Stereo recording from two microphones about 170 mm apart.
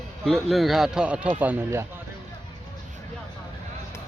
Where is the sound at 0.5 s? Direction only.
Centre (ahead or behind).